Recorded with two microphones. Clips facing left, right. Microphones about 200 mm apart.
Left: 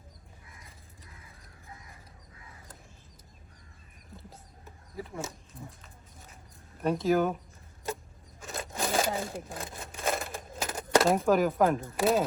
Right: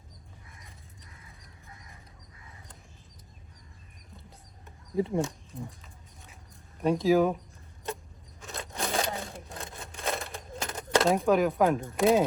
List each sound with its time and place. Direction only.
4.2 s a sound: centre (ahead or behind)
4.9 s speech: 30° right (ahead or behind)
6.8 s speech: centre (ahead or behind)
8.4 s wood: centre (ahead or behind)